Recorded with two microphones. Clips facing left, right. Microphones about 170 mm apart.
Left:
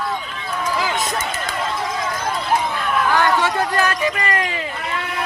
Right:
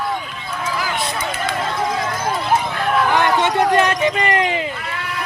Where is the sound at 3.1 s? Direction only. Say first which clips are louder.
Right 1 dB; 20° right (ahead or behind).